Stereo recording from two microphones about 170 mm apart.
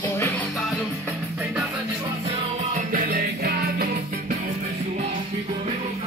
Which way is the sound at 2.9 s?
60° right (ahead or behind).